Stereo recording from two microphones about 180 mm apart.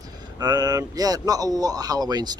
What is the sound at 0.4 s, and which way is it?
Speech, 20° right (ahead or behind).